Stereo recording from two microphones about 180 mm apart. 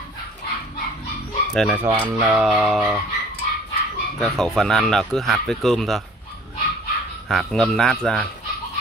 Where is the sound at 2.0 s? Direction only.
15° right (ahead or behind).